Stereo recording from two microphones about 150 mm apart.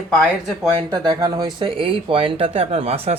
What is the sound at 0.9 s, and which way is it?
Speech, 30° right (ahead or behind).